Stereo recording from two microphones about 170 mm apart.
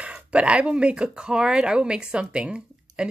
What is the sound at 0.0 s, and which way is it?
Speech, 5° right (ahead or behind).